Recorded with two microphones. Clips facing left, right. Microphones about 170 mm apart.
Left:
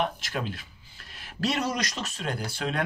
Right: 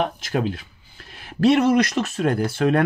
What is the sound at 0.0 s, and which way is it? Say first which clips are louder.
Speech: right 7 dB; 50° right (ahead or behind).